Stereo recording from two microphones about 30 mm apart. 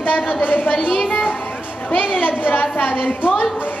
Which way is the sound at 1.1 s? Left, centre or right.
Left.